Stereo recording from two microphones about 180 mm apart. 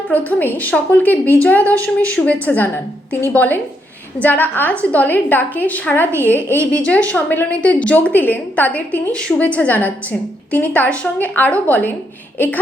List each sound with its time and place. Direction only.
0.1 s a woman's voice: 10° left (ahead or behind)
1.7 s speech: 15° right (ahead or behind)
2.0 s a woman's voice: 5° left (ahead or behind)